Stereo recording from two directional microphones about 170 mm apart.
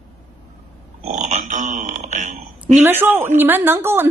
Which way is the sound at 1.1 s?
45° right (ahead or behind).